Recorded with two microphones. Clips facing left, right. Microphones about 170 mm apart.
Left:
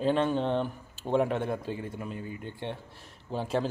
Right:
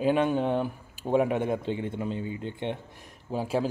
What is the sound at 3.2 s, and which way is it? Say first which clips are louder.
Speech: right 2 dB; 10° right (ahead or behind).